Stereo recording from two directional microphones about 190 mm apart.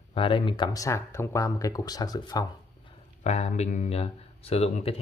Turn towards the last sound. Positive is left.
turn(degrees=30)  # may be behind; listen again after turning